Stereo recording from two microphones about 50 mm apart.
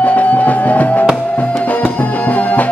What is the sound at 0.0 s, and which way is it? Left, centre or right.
Music, left.